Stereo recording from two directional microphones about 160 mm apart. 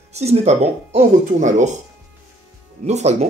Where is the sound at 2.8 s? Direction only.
45° right (ahead or behind).